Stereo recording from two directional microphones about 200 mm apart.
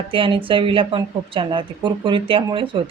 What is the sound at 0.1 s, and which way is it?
A woman's voice, 25° right (ahead or behind).